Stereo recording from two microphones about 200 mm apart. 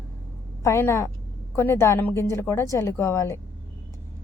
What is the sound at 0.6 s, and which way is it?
A woman's voice, 15° left (ahead or behind).